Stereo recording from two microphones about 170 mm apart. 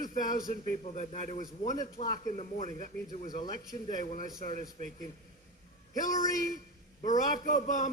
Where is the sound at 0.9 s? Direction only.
45° left (ahead or behind).